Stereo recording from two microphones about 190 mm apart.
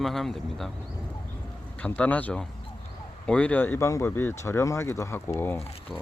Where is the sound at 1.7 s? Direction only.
5° left (ahead or behind).